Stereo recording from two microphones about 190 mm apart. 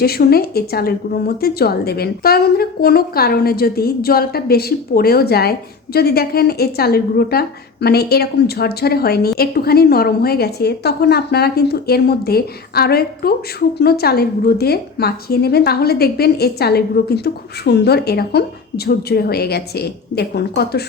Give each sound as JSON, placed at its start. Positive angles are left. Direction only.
{"t": 0.0, "sound": "a woman's voice", "side_deg": 55}